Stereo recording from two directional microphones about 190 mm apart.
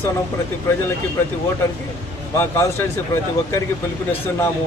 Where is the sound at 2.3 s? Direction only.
15° left (ahead or behind).